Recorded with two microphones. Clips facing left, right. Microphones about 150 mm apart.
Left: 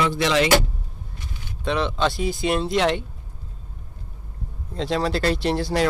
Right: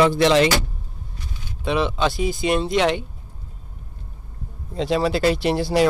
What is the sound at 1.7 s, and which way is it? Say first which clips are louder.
Speech: right 1 dB; 5° right (ahead or behind).